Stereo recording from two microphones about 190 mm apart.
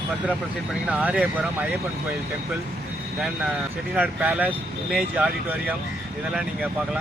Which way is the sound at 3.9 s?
5° right (ahead or behind).